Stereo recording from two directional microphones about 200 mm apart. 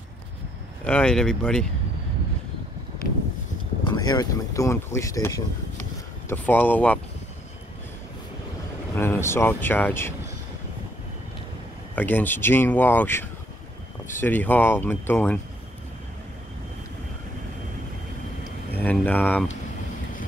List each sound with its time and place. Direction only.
0.8 s speech: 5° left (ahead or behind)
3.8 s speech: 20° left (ahead or behind)
8.9 s speech: 10° left (ahead or behind)
11.9 s speech: 10° left (ahead or behind)
18.8 s speech: 10° left (ahead or behind)